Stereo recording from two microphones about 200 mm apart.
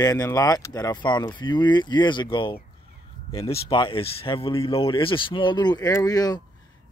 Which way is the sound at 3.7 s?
25° left (ahead or behind).